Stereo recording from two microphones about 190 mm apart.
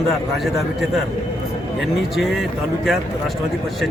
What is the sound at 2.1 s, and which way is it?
Speech, centre (ahead or behind).